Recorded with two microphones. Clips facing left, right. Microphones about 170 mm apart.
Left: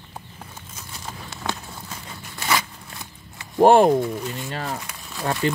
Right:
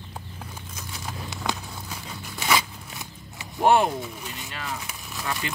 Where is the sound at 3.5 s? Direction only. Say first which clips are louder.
Left 7 dB; 45° left (ahead or behind).